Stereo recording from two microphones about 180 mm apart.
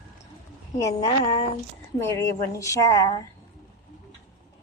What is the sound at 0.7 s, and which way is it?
A woman's voice, 15° left (ahead or behind).